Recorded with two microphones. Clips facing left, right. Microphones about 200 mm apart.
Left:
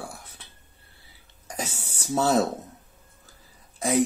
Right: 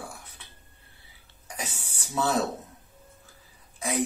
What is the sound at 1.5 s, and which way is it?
Throat clearing, 40° left (ahead or behind).